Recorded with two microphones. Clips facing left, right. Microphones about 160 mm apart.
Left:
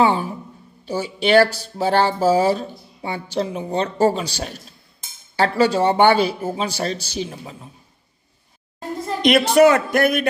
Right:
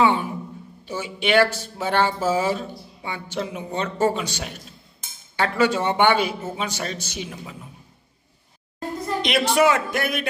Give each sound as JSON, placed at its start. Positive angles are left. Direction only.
{"t": 0.0, "sound": "a sound", "side_deg": 35}
{"t": 0.8, "sound": "speech", "side_deg": 35}
{"t": 9.2, "sound": "a man's voice", "side_deg": 45}